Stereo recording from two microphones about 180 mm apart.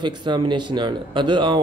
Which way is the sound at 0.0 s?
25° right (ahead or behind).